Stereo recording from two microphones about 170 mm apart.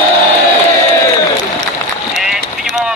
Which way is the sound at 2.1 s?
Centre (ahead or behind).